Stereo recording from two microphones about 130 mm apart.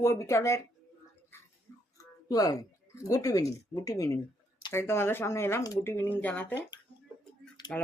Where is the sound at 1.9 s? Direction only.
25° left (ahead or behind).